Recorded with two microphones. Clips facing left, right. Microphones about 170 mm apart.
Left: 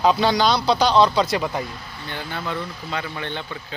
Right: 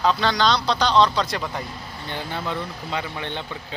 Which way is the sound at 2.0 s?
25° right (ahead or behind).